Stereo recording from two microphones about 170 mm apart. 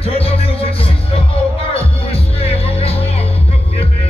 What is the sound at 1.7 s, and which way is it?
Music, 35° left (ahead or behind).